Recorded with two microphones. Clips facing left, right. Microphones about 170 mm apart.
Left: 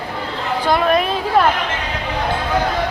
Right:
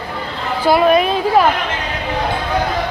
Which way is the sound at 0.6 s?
5° right (ahead or behind).